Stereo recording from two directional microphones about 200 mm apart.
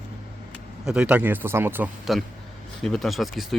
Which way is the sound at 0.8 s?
5° right (ahead or behind).